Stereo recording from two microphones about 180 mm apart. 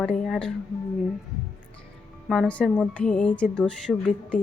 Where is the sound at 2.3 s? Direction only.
5° left (ahead or behind).